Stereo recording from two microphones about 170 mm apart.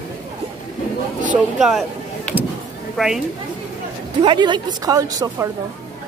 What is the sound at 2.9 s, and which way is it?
Speech, centre (ahead or behind).